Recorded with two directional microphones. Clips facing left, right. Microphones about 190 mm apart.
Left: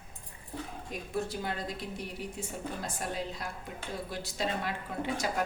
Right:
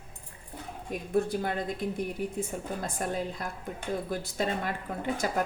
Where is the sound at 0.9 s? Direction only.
55° right (ahead or behind).